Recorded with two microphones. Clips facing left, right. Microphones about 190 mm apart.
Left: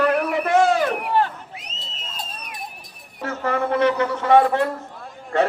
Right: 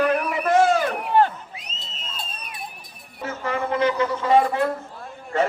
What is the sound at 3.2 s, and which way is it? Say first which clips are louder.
A man's voice: left 3 dB; 65° left (ahead or behind).